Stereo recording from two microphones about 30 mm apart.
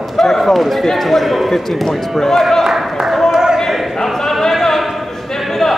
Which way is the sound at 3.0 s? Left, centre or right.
Right.